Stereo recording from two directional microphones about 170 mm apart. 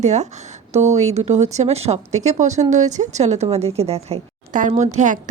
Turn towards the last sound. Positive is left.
turn(degrees=-45)  # may be behind; listen again after turning